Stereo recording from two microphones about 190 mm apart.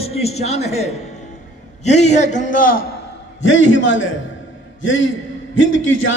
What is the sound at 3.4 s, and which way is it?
Speech, 80° left.